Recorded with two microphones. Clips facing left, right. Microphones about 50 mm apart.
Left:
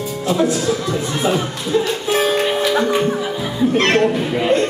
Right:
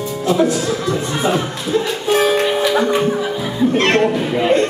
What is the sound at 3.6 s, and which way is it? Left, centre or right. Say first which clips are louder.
Speech: even; centre.